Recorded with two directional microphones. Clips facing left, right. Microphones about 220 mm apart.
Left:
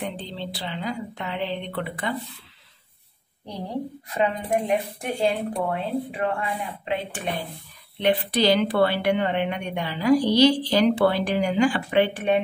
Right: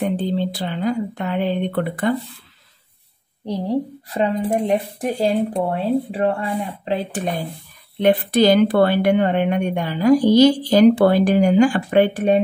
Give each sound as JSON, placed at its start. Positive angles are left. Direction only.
{"t": 0.0, "sound": "a woman's voice", "side_deg": -50}
{"t": 4.5, "sound": "a woman's voice", "side_deg": -35}